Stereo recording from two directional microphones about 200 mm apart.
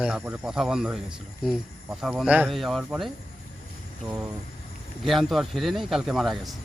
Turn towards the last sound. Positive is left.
turn(degrees=0)  # may be behind; listen again after turning